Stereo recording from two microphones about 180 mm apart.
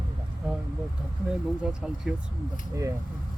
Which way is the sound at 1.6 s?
5° right (ahead or behind).